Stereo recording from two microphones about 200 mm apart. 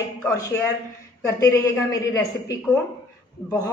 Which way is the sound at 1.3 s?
15° left (ahead or behind).